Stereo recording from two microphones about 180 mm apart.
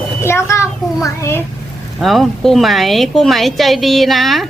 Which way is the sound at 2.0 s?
Centre (ahead or behind).